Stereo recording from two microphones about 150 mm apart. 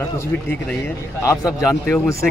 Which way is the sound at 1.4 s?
5° right (ahead or behind).